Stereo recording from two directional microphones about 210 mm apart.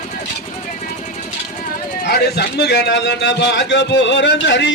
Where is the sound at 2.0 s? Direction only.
50° left (ahead or behind).